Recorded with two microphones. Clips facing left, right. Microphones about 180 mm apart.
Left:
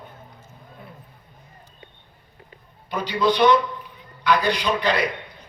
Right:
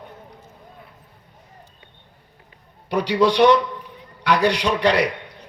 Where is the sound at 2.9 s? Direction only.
75° right (ahead or behind).